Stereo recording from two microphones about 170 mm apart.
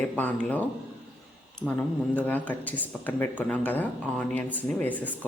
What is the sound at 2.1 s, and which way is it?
Speech, 10° left (ahead or behind).